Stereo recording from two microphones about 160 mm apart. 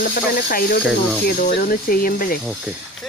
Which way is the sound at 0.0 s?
65° left (ahead or behind).